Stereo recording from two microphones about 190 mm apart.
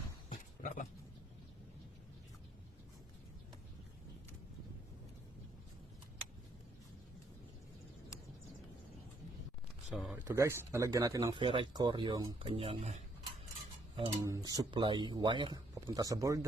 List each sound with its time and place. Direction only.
0.3 s a sound: 45° left (ahead or behind)
9.9 s a man's voice: 5° right (ahead or behind); by 13.0 s 30° right (ahead or behind)
14.3 s a man's voice: 15° right (ahead or behind)